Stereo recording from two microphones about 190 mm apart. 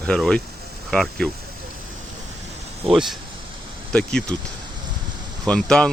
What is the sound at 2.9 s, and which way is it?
Speech, centre (ahead or behind).